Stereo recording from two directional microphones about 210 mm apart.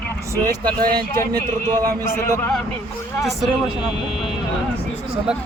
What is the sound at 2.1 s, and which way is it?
Speech, 10° left (ahead or behind).